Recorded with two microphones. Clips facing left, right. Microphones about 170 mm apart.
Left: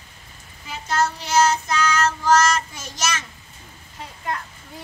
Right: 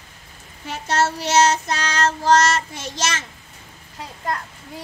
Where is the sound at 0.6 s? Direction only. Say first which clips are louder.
Right 2 dB; 80° right.